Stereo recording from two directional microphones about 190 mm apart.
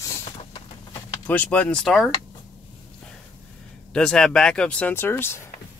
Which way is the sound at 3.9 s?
5° left (ahead or behind).